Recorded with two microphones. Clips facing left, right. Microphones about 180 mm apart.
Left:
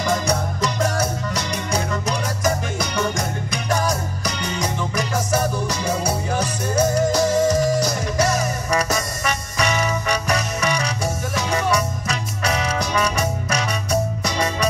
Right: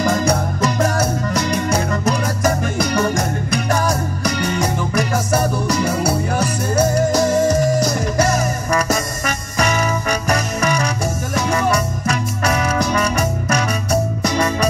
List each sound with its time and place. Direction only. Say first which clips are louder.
0.0 s music: right 4 dB; 50° right (ahead or behind)